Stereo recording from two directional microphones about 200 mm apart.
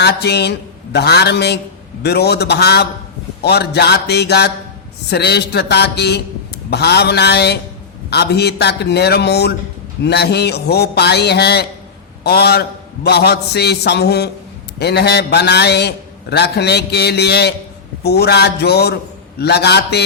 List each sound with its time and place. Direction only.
0.0 s a man's voice: 55° left (ahead or behind)